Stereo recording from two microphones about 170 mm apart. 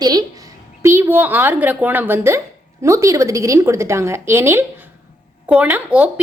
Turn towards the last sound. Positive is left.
turn(degrees=-10)  # may be behind; listen again after turning